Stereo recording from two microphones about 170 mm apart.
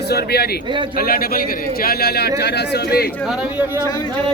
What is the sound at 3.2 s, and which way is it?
Speech, 5° right (ahead or behind).